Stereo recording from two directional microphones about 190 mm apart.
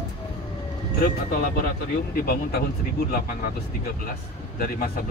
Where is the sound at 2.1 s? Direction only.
55° left (ahead or behind).